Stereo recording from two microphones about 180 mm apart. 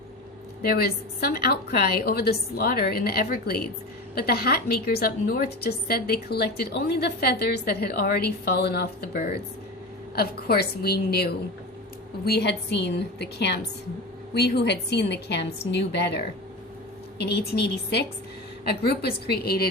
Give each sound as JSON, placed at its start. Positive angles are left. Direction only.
{"t": 0.7, "sound": "a woman's voice", "side_deg": 60}